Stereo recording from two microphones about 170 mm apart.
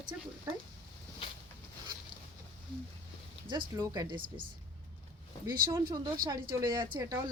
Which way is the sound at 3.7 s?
20° right (ahead or behind).